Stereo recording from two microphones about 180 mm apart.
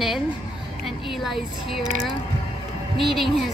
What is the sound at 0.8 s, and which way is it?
Speech, centre (ahead or behind).